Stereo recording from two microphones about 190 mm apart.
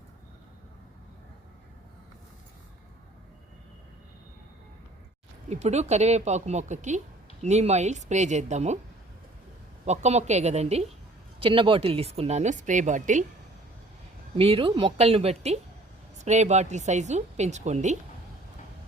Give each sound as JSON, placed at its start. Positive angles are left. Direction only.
{"t": 5.5, "sound": "speech", "side_deg": -35}
{"t": 9.8, "sound": "speech", "side_deg": -35}
{"t": 14.3, "sound": "speech", "side_deg": -30}